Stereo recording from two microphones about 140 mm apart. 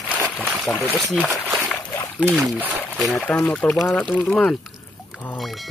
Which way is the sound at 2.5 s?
Centre (ahead or behind).